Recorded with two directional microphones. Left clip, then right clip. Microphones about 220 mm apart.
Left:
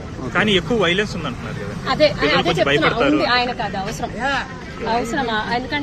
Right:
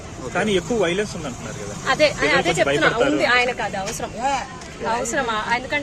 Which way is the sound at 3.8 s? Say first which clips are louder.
Left 1 dB; centre (ahead or behind).